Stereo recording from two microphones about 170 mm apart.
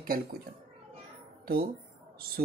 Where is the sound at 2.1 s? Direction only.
65° right (ahead or behind).